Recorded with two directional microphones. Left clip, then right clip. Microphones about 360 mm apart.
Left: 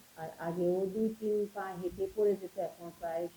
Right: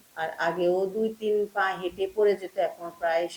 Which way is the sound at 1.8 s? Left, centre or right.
Right.